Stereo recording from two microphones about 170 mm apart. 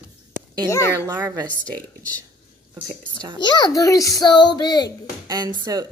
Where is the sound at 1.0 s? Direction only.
25° right (ahead or behind).